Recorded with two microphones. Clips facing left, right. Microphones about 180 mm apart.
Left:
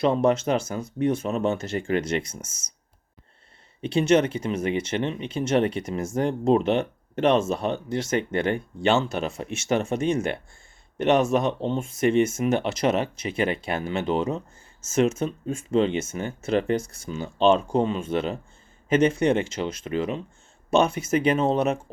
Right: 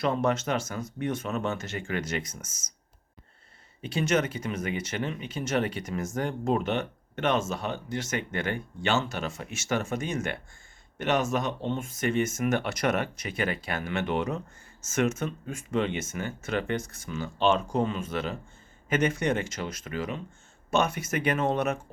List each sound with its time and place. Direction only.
0.0 s speech: 30° left (ahead or behind)
3.8 s speech: 30° left (ahead or behind)